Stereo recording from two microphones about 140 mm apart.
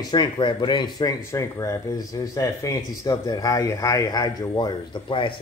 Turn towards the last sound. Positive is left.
turn(degrees=35)  # may be behind; listen again after turning